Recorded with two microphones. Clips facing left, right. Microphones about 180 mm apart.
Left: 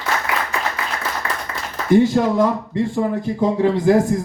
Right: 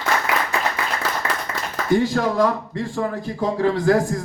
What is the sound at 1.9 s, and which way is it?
A man's voice, 20° left (ahead or behind).